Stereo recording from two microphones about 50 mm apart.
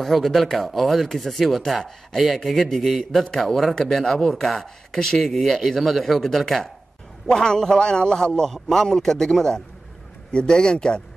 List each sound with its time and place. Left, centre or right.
0.0 s a man's voice: centre